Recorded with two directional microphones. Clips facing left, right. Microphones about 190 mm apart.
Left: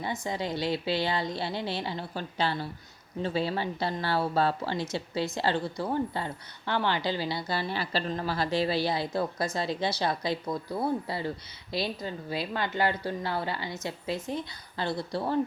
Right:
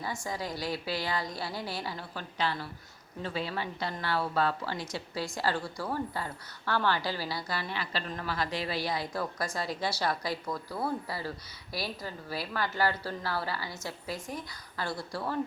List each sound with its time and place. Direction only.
0.3 s a woman's voice: 25° left (ahead or behind)